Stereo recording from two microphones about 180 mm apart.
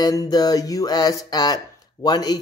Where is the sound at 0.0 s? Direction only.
20° left (ahead or behind).